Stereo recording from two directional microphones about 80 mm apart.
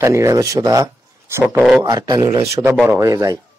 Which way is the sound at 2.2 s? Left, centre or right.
Right.